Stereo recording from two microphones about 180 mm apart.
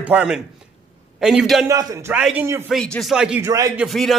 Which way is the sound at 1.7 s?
20° right (ahead or behind).